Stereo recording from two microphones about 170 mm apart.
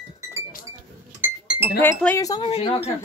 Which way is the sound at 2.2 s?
20° left (ahead or behind).